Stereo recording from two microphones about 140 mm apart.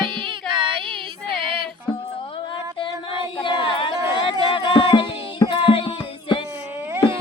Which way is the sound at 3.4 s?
35° left (ahead or behind).